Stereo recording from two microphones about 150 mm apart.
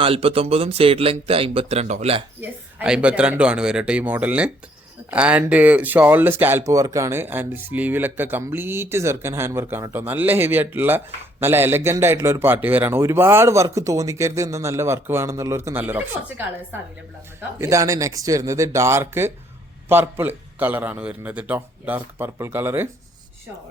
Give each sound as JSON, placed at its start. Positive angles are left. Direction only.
{"t": 0.0, "sound": "speech", "side_deg": -40}
{"t": 2.4, "sound": "a man's voice", "side_deg": -10}
{"t": 17.6, "sound": "a man's voice", "side_deg": -20}